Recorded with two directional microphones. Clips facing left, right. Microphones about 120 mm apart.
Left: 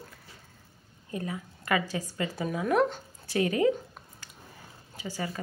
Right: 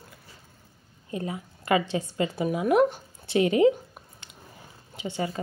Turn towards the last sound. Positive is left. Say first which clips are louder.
# right 5 dB
turn(degrees=-25)  # may be behind; listen again after turning